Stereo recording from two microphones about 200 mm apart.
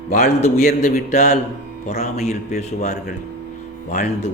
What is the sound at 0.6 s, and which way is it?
Speech, 50° left (ahead or behind).